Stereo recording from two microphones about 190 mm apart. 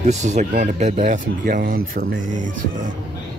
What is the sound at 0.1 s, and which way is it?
Speech, 40° right (ahead or behind).